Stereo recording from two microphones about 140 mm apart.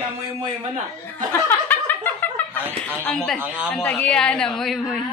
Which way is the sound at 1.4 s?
15° left (ahead or behind).